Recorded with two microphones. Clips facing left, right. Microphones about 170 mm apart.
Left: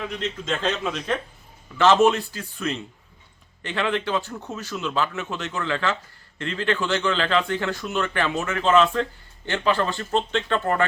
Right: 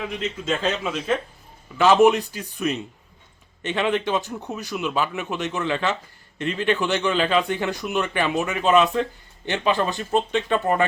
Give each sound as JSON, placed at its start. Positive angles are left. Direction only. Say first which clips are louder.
{"t": 0.0, "sound": "speech", "louder": "right 1 dB", "side_deg": -5}